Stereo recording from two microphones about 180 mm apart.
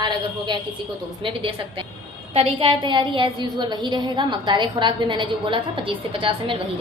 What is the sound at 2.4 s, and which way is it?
A woman's voice, 30° right (ahead or behind).